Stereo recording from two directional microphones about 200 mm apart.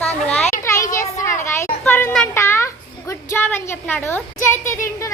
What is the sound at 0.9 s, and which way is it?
Children playing, 15° left (ahead or behind).